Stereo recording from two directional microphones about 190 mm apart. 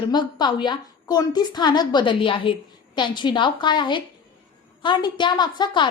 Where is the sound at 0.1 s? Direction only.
25° left (ahead or behind).